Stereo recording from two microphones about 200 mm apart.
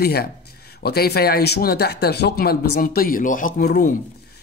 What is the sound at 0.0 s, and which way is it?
Speech, 50° left (ahead or behind).